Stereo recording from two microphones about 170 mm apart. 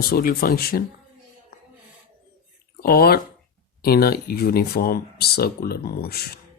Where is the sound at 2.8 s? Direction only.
65° left (ahead or behind).